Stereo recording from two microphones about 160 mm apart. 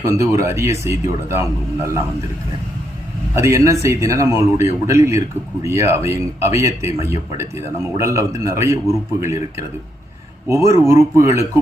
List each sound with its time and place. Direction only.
0.0 s speech: 20° right (ahead or behind)
3.3 s speech: 20° right (ahead or behind)